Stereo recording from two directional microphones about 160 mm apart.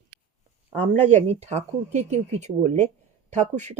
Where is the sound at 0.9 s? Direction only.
45° right (ahead or behind).